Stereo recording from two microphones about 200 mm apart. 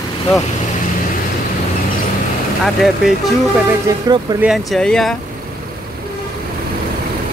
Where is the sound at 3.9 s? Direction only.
15° right (ahead or behind).